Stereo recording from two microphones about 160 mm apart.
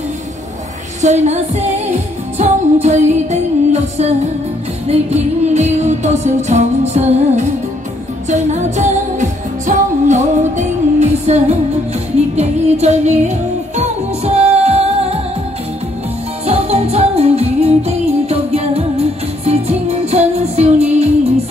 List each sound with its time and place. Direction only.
1.0 s music: 45° right (ahead or behind)
16.4 s music: 40° right (ahead or behind)